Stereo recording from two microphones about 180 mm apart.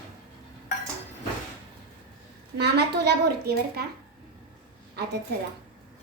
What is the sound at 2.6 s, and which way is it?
Speech, 70° right (ahead or behind).